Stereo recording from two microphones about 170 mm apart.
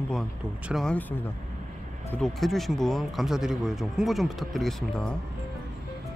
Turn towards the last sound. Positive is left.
turn(degrees=0)  # may be behind; listen again after turning